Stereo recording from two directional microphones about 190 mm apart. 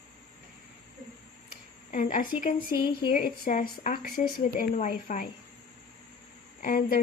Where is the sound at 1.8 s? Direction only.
45° left (ahead or behind).